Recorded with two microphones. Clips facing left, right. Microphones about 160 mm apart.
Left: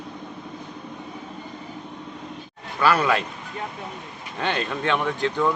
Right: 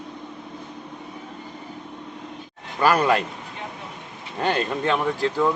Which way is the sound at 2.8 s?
40° right (ahead or behind).